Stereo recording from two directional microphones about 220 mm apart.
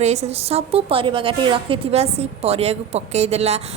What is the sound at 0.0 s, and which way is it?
A woman's voice, 30° right (ahead or behind).